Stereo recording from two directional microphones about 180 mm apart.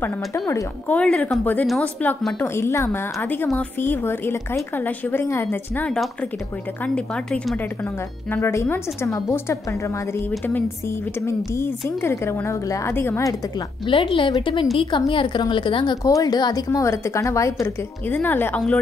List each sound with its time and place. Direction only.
0.0 s a woman's voice: 15° left (ahead or behind)
13.8 s a woman's voice: 30° left (ahead or behind); by 18.8 s 5° left (ahead or behind)